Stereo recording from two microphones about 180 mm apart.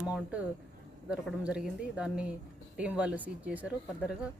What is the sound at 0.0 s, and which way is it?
A woman's voice, 5° right (ahead or behind).